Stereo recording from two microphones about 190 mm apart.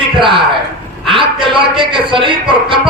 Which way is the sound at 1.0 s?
25° right (ahead or behind).